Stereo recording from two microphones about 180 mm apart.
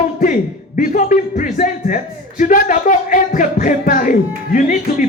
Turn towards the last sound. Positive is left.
turn(degrees=45)  # may be behind; listen again after turning